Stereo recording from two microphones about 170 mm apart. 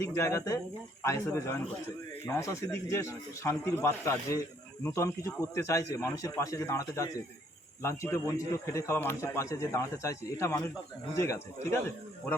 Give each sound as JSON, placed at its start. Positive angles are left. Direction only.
{"t": 0.0, "sound": "a man's voice", "side_deg": 15}